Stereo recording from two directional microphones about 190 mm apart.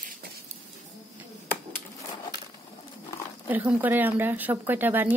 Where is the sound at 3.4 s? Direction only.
10° right (ahead or behind).